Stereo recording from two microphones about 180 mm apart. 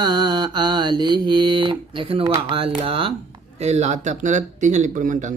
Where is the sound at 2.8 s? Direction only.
30° right (ahead or behind).